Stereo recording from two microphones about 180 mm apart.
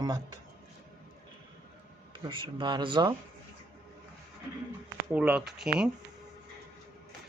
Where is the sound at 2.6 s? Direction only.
25° right (ahead or behind).